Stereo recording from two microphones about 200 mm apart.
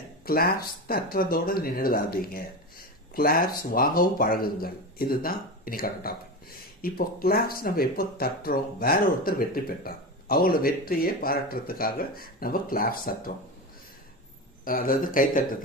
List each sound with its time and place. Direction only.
0.3 s speech: 50° left (ahead or behind)
14.6 s speech: 45° left (ahead or behind)